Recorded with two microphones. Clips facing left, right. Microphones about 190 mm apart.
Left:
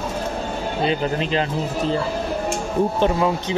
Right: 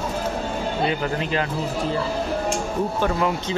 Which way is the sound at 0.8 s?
25° left (ahead or behind).